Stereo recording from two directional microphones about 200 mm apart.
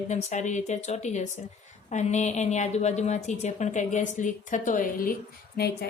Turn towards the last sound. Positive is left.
turn(degrees=50)  # may be behind; listen again after turning